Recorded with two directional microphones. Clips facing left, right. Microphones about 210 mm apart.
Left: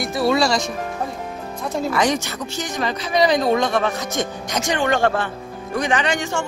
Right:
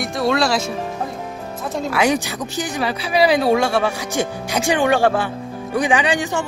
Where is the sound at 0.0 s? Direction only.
Centre (ahead or behind).